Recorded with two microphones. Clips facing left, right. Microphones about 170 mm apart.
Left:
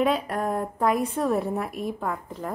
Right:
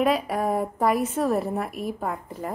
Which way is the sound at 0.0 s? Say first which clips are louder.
Right 1 dB; 5° right (ahead or behind).